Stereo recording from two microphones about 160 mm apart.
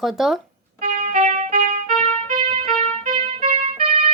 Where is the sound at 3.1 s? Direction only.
35° right (ahead or behind).